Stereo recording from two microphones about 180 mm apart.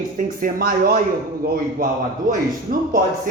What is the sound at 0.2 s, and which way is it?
Speech, 50° right (ahead or behind).